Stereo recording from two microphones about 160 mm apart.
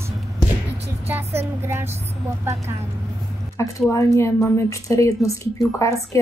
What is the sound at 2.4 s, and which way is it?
Speech, 15° right (ahead or behind).